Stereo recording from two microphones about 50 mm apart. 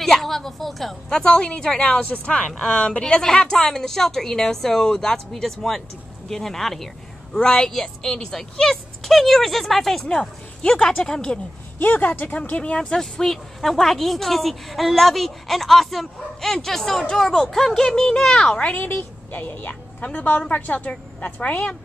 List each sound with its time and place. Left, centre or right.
0.0 s a woman's voice: centre
1.1 s a woman's voice: centre
1.8 s a woman's voice: left; by 10.0 s centre
10.0 s a woman's voice: centre
11.8 s a woman's voice: left
12.7 s a woman's voice: centre
18.9 s a woman's voice: left